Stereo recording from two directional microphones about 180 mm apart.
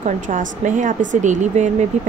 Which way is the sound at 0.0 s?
45° right (ahead or behind).